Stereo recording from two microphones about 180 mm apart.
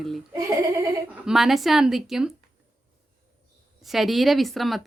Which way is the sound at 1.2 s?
Centre (ahead or behind).